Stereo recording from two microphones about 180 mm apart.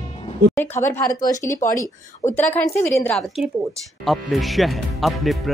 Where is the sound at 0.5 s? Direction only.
10° left (ahead or behind).